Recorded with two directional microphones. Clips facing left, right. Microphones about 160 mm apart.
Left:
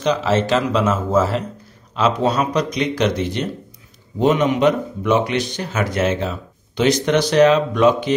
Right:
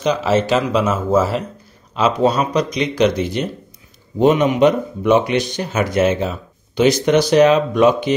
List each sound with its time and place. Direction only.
0.0 s speech: 10° right (ahead or behind)
4.2 s speech: 15° right (ahead or behind)